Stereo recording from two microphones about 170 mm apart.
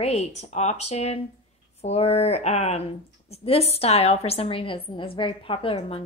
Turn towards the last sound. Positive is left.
turn(degrees=35)  # may be behind; listen again after turning